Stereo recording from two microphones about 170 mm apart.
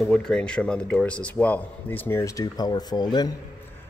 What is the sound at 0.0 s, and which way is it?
A man's voice, 5° left (ahead or behind).